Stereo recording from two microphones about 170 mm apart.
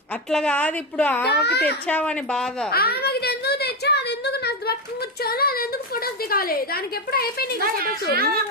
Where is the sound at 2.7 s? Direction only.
65° left (ahead or behind).